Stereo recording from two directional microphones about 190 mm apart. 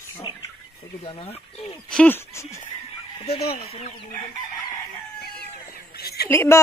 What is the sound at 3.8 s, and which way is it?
Chicken, 35° left (ahead or behind).